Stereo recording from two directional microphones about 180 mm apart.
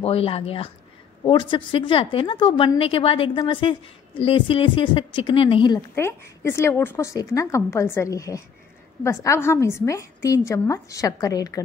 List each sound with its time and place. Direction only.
0.0 s a woman's voice: 30° left (ahead or behind)
5.9 s a woman's voice: 15° left (ahead or behind)